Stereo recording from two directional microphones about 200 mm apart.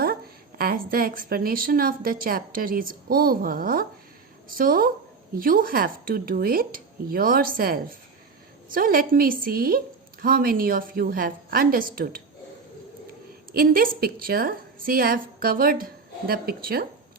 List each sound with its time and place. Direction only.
0.6 s a woman's voice: 50° right (ahead or behind)
13.5 s a woman's voice: 45° right (ahead or behind)